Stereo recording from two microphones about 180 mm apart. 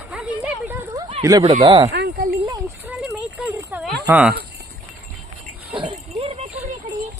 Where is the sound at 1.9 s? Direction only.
70° right (ahead or behind).